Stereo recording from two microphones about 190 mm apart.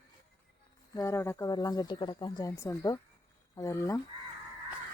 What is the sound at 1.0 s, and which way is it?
Speech, 15° left (ahead or behind).